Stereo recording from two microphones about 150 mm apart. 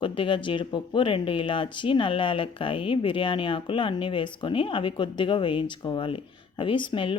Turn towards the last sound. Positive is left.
turn(degrees=35)  # may be behind; listen again after turning